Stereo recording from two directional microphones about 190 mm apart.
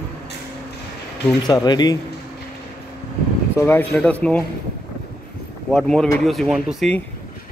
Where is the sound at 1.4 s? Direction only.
20° left (ahead or behind).